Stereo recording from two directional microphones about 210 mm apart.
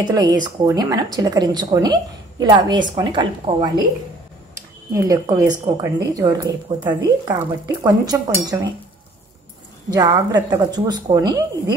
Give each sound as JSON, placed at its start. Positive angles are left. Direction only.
{"t": 0.0, "sound": "a woman's voice", "side_deg": -20}
{"t": 9.8, "sound": "a woman's voice", "side_deg": -20}